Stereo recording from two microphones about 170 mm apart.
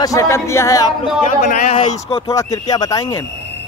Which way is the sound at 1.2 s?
45° left (ahead or behind).